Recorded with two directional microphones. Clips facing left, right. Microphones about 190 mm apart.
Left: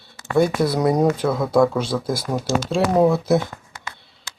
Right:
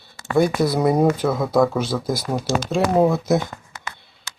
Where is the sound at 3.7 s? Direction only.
55° right (ahead or behind).